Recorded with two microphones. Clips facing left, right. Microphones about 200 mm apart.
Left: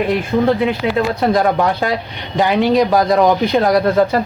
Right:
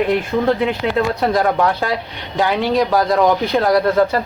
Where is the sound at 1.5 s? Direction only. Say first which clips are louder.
Left 1 dB; 15° left (ahead or behind).